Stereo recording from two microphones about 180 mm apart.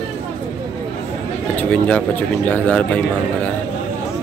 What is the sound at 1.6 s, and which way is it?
Speech, 5° left (ahead or behind).